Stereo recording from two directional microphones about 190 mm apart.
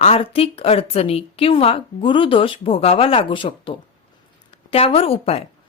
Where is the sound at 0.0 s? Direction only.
30° left (ahead or behind).